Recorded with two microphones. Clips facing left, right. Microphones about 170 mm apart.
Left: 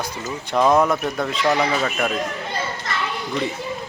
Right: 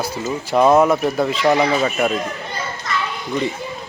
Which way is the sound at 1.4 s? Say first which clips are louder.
Right 3 dB; 15° right (ahead or behind).